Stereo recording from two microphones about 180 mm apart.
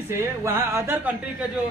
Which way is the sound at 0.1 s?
15° right (ahead or behind).